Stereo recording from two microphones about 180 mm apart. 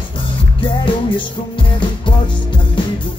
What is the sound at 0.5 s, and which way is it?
Music, 30° left (ahead or behind).